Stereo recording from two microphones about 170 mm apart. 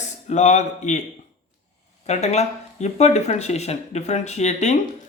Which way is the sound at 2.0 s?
40° left (ahead or behind).